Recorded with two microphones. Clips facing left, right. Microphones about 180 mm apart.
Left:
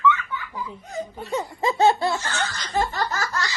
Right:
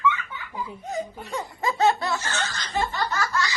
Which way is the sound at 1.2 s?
25° left (ahead or behind).